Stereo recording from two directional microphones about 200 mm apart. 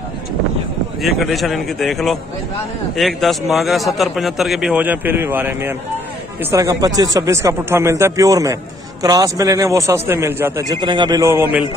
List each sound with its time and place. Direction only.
1.0 s a man's voice: centre (ahead or behind)